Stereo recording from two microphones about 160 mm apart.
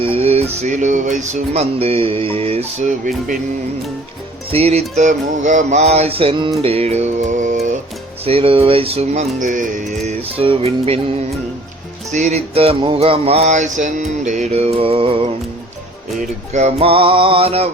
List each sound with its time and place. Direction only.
0.0 s speech: 35° right (ahead or behind)
4.5 s speech: 40° right (ahead or behind)
6.6 s music: 35° right (ahead or behind)
8.2 s speech: 35° right (ahead or behind); by 9.9 s 55° right (ahead or behind)
10.1 s speech: 35° right (ahead or behind)
12.1 s speech: 45° right (ahead or behind)
16.1 s speech: 45° right (ahead or behind)